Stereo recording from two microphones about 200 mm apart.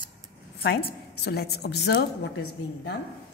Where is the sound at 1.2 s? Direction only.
55° left (ahead or behind).